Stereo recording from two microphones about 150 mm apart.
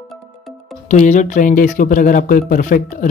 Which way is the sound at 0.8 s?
55° left (ahead or behind).